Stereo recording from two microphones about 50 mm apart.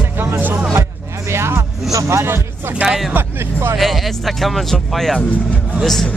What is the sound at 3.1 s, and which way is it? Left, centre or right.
Speech, right.